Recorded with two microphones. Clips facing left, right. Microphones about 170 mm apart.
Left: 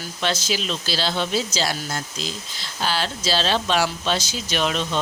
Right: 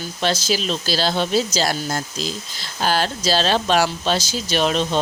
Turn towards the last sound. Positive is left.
turn(degrees=-35)  # may be behind; listen again after turning